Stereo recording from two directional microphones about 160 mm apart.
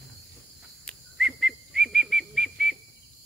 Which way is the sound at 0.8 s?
Centre (ahead or behind).